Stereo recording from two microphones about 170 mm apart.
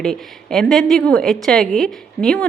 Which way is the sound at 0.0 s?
5° left (ahead or behind).